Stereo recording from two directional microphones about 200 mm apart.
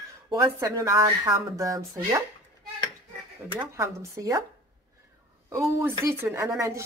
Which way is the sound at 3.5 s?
15° right (ahead or behind).